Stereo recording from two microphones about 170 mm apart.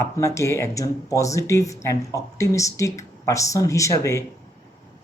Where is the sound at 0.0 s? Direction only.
15° left (ahead or behind).